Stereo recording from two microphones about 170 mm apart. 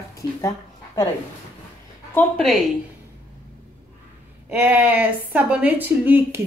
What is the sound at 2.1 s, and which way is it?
Speech, 5° left (ahead or behind).